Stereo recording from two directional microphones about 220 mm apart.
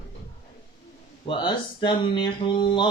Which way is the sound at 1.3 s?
20° left (ahead or behind).